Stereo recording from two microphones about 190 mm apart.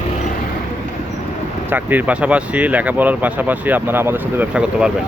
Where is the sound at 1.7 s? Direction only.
10° right (ahead or behind).